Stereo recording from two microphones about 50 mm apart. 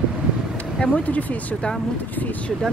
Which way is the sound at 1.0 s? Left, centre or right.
Left.